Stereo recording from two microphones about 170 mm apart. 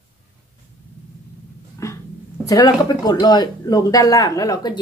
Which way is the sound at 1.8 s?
20° left (ahead or behind).